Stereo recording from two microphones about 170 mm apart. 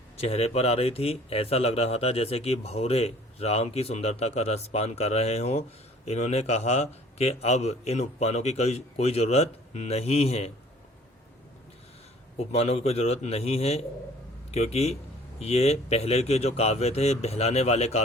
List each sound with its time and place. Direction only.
0.2 s speech: 35° left (ahead or behind)
12.4 s speech: 35° left (ahead or behind)